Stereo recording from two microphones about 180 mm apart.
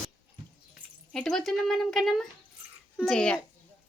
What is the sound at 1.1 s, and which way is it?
A child's voice, centre (ahead or behind).